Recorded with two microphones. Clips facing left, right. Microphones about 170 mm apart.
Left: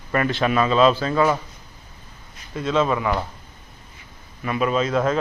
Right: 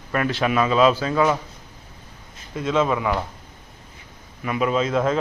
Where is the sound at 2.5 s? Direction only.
15° right (ahead or behind).